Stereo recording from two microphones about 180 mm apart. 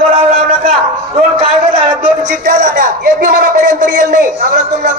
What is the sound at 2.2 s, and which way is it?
A man's voice, 45° right (ahead or behind).